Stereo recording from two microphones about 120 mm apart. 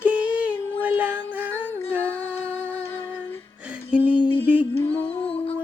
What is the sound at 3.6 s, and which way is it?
Music, 10° right (ahead or behind).